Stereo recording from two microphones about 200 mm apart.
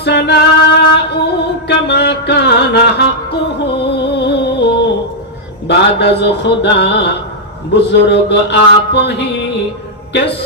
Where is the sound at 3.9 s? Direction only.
55° left (ahead or behind).